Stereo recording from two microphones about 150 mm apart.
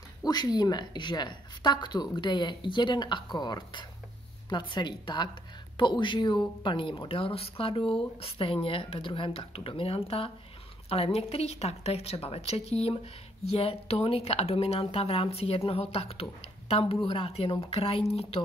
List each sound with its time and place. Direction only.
0.2 s a woman's voice: 25° left (ahead or behind)